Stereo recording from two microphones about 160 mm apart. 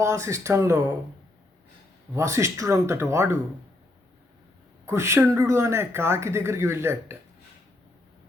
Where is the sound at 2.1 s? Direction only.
20° right (ahead or behind).